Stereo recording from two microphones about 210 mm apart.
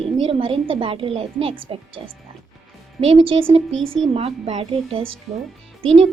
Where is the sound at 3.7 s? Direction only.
70° right (ahead or behind).